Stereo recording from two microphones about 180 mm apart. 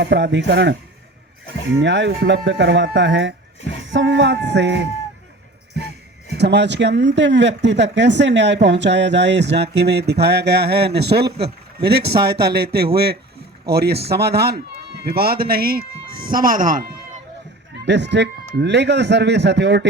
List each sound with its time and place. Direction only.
0.0 s speech: 75° right (ahead or behind)
1.8 s speech: 85° right
6.3 s speech: 70° right (ahead or behind); by 16.9 s 50° right (ahead or behind)
17.8 s speech: 75° right (ahead or behind)